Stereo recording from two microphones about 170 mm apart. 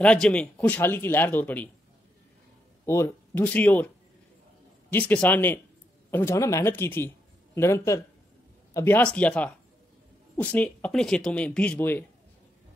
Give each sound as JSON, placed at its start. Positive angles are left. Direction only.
{"t": 0.0, "sound": "speech", "side_deg": 5}
{"t": 2.8, "sound": "speech", "side_deg": 15}
{"t": 4.9, "sound": "speech", "side_deg": 10}